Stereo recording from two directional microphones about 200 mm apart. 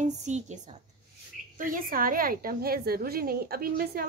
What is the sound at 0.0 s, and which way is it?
A woman's voice, 35° right (ahead or behind).